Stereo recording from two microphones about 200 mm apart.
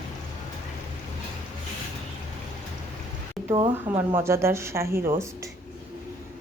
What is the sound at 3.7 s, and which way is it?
Speech, 10° right (ahead or behind).